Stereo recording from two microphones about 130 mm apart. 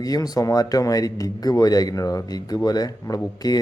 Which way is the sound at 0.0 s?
30° left (ahead or behind).